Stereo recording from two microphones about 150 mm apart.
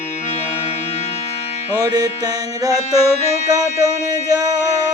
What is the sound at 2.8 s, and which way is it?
Music, 45° left (ahead or behind).